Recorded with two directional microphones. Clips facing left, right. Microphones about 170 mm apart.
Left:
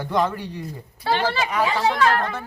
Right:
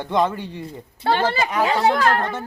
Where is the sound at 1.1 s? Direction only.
50° right (ahead or behind).